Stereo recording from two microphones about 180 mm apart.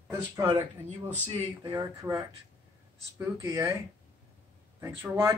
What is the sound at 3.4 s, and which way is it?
Speech, 15° right (ahead or behind).